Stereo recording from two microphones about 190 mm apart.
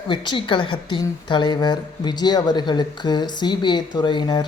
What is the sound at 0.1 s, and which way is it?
A woman's voice, 25° left (ahead or behind).